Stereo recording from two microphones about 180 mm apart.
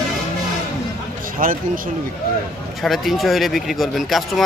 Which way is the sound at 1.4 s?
50° right (ahead or behind).